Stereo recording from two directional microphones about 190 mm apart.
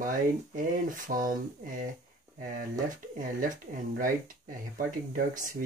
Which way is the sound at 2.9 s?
45° right (ahead or behind).